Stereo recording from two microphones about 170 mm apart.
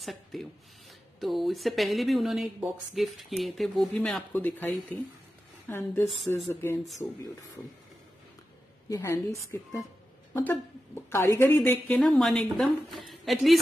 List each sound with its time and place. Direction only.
0.0 s speech: centre (ahead or behind)
6.0 s speech: centre (ahead or behind)
6.5 s speech: 15° left (ahead or behind)
8.8 s a woman's voice: 15° left (ahead or behind)
12.0 s speech: centre (ahead or behind)